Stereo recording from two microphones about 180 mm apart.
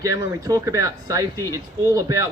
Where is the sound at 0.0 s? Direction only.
20° right (ahead or behind).